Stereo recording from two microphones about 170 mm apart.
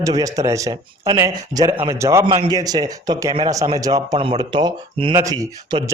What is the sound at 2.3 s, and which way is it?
Speech, 25° right (ahead or behind).